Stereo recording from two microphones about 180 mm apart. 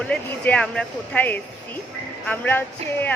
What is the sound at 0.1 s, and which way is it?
A woman's voice, 5° left (ahead or behind).